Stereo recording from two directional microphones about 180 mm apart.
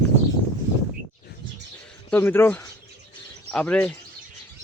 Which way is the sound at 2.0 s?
10° left (ahead or behind).